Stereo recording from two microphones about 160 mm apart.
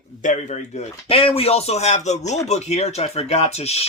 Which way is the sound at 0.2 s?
50° left (ahead or behind).